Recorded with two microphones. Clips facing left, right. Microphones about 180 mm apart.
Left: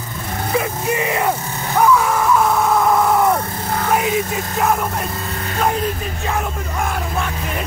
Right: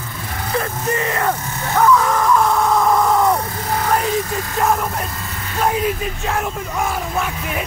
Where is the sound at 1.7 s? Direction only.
10° left (ahead or behind).